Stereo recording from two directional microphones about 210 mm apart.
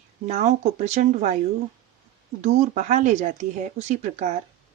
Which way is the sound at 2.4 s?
35° right (ahead or behind).